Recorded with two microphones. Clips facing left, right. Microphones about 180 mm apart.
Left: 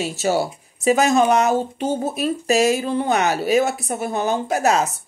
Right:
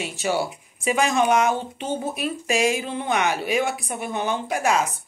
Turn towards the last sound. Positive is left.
turn(degrees=40)  # may be behind; listen again after turning